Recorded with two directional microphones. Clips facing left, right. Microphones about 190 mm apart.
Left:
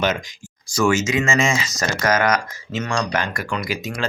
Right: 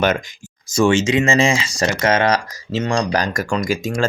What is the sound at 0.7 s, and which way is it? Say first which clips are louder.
Speech: right 4 dB; 30° right (ahead or behind).